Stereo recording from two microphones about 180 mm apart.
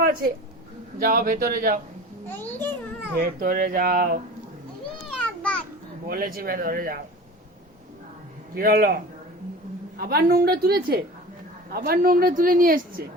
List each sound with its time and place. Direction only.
0.9 s a woman's voice: 50° right (ahead or behind)
2.2 s a child's voice: 10° left (ahead or behind)
3.2 s a woman's voice: 50° right (ahead or behind)
5.0 s a sound: 5° left (ahead or behind)
6.1 s a woman's voice: 55° right (ahead or behind)
8.5 s a woman's voice: 55° right (ahead or behind)
10.0 s a woman's voice: 60° right (ahead or behind)